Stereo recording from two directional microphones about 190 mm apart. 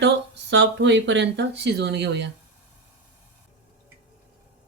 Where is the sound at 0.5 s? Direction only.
70° right (ahead or behind).